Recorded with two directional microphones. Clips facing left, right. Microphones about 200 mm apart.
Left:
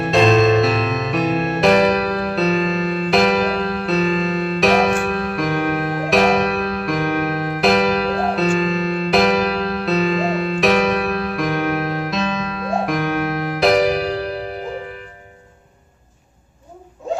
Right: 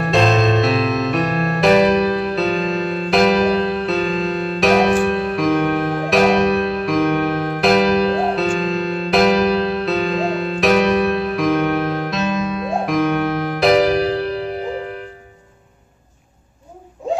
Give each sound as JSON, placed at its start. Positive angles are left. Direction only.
{"t": 0.0, "sound": "music", "side_deg": 0}